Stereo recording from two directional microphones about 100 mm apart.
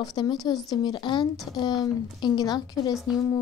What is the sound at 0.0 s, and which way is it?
A woman's voice, 45° left (ahead or behind).